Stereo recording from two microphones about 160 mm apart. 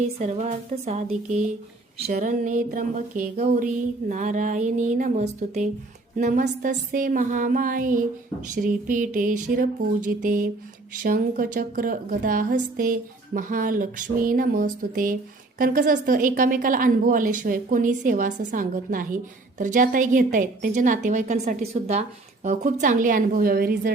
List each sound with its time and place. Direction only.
0.0 s a woman's voice: 45° right (ahead or behind); by 23.9 s 65° right (ahead or behind)